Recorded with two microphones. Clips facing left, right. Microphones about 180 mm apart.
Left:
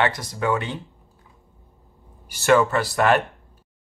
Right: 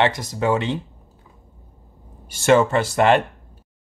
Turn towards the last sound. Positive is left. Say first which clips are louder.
# right 3 dB
turn(degrees=-25)  # may be behind; listen again after turning